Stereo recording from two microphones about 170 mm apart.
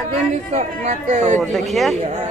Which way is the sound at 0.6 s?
45° right (ahead or behind).